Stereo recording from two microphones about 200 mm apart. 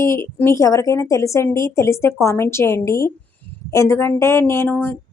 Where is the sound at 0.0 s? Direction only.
15° left (ahead or behind).